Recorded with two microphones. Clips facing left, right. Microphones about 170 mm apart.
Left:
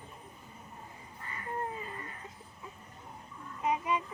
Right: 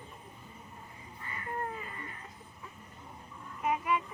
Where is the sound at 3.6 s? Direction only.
20° left (ahead or behind).